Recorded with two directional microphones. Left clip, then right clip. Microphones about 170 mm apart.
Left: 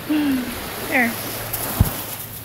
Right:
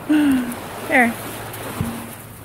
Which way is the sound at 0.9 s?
25° right (ahead or behind).